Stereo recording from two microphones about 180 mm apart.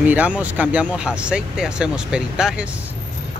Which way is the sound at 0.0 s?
10° right (ahead or behind).